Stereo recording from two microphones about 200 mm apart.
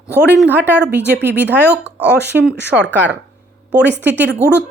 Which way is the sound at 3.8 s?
60° right (ahead or behind).